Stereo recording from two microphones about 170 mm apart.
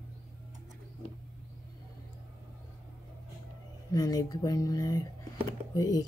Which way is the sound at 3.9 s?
20° left (ahead or behind).